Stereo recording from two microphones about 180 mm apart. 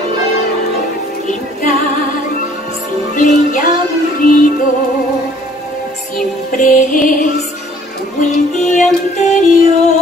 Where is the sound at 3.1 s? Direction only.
45° left (ahead or behind).